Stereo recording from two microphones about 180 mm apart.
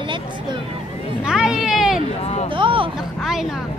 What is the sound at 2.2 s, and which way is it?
Speech, 35° left (ahead or behind).